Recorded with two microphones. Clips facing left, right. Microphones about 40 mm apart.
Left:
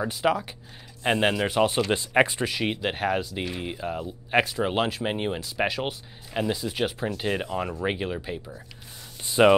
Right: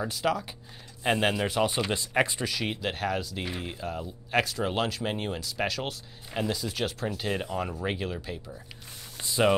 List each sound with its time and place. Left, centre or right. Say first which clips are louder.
0.0 s speech: left 4 dB; centre
1.9 s speech: left 5 dB; left
9.2 s a sound: left 6 dB; left